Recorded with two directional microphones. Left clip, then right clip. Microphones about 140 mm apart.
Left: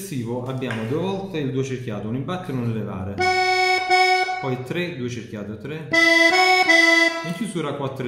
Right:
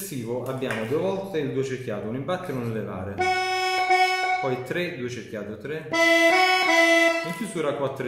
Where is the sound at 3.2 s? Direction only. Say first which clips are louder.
Left 5 dB; 20° left (ahead or behind).